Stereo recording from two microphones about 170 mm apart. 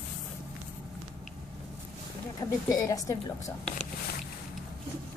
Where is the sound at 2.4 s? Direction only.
20° left (ahead or behind).